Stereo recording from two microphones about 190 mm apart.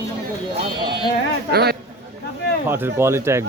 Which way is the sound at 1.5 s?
55° right (ahead or behind).